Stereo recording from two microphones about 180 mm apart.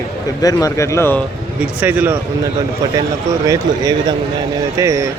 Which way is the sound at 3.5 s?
20° right (ahead or behind).